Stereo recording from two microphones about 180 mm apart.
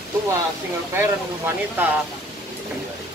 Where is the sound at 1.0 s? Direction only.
10° right (ahead or behind).